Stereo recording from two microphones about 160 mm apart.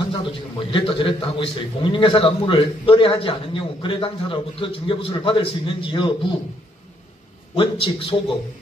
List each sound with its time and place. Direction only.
0.2 s a man's voice: 30° left (ahead or behind)
7.5 s a man's voice: 30° left (ahead or behind)